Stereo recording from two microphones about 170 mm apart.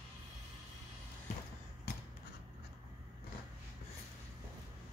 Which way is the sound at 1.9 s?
70° left (ahead or behind).